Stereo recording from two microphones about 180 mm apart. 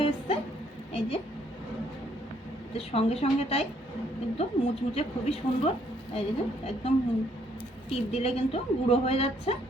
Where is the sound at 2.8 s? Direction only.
35° left (ahead or behind).